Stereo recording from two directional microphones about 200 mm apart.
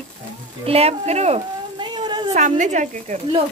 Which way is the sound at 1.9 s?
20° right (ahead or behind).